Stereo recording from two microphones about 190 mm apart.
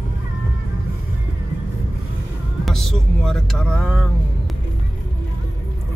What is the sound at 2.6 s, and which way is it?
Vehicle, centre (ahead or behind).